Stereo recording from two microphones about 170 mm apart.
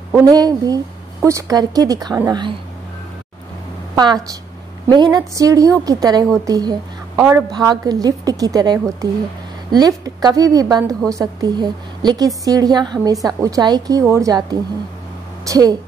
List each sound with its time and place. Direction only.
0.1 s a woman's voice: 20° right (ahead or behind)
3.9 s a woman's voice: 25° right (ahead or behind)